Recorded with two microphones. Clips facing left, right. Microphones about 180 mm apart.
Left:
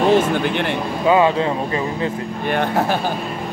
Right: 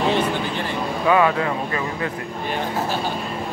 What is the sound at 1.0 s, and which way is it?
Speech, 25° left (ahead or behind).